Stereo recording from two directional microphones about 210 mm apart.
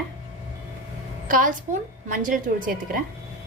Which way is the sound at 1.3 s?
40° right (ahead or behind).